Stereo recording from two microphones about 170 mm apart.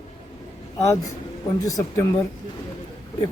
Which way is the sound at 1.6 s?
20° left (ahead or behind).